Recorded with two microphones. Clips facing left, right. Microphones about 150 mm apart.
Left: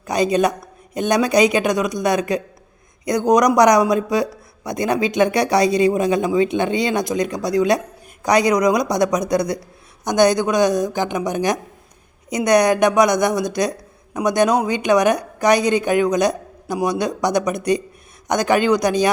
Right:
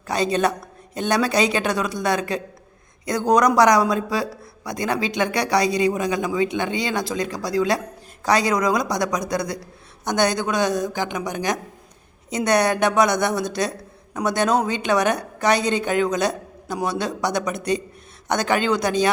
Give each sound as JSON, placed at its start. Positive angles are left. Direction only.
{"t": 0.1, "sound": "a woman's voice", "side_deg": 15}
{"t": 17.5, "sound": "speech", "side_deg": -25}
{"t": 18.3, "sound": "a woman's voice", "side_deg": 15}